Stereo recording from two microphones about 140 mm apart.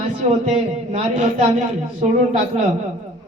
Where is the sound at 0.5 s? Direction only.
55° right (ahead or behind).